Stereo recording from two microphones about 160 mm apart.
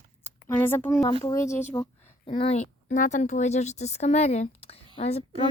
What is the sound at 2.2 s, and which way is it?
Speech, 35° left (ahead or behind).